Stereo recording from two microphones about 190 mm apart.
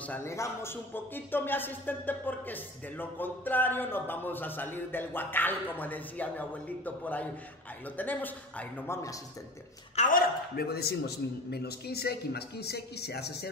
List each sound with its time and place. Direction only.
0.0 s speech: 10° left (ahead or behind)
9.9 s a man's voice: 45° left (ahead or behind)